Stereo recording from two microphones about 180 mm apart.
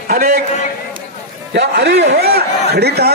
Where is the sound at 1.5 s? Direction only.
65° right (ahead or behind).